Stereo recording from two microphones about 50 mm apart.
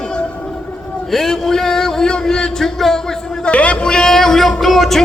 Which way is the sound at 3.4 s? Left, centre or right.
Left.